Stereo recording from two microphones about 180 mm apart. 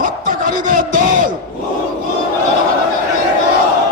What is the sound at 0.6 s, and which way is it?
Crowd, 50° right (ahead or behind).